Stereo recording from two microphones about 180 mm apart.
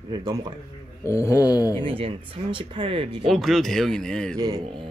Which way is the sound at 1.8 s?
30° right (ahead or behind).